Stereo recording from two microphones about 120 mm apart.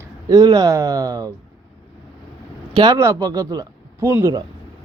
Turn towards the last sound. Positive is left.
turn(degrees=-25)  # may be behind; listen again after turning